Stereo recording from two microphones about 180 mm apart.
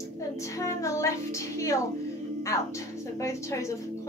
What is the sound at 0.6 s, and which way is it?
Child singing, 15° left (ahead or behind).